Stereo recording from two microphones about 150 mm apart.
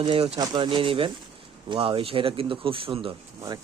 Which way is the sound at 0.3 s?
30° right (ahead or behind).